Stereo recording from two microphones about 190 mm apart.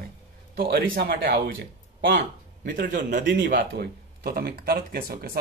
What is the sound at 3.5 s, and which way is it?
Speech, 55° right (ahead or behind).